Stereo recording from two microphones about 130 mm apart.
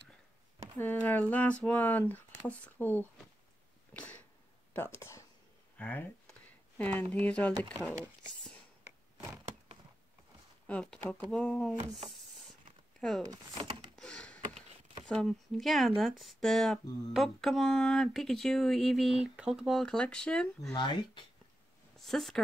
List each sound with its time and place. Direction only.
0.7 s speech: 15° left (ahead or behind)
3.9 s a sound: 10° left (ahead or behind)
4.7 s speech: 15° left (ahead or behind)
10.7 s speech: 5° left (ahead or behind)
13.3 s speech: 30° right (ahead or behind)
13.9 s computer keyboard: 5° left (ahead or behind)
15.0 s speech: 5° left (ahead or behind)
20.7 s speech: 35° left (ahead or behind)
21.9 s speech: centre (ahead or behind)